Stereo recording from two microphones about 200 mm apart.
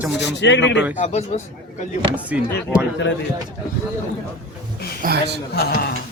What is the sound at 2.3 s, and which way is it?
Speech, 5° right (ahead or behind).